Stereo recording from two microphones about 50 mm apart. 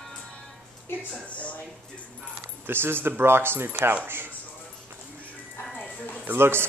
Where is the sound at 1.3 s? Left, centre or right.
Left.